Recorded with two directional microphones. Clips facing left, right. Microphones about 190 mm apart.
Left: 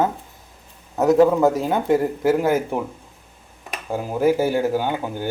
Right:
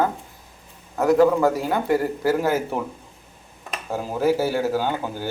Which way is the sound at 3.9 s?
15° left (ahead or behind).